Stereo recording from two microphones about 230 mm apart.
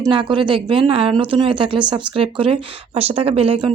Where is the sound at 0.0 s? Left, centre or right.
Right.